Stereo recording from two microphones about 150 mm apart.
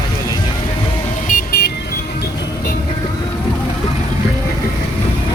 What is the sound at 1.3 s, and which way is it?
Vehicle, 80° left.